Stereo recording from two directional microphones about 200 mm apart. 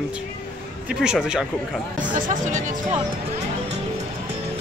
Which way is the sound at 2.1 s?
40° right (ahead or behind).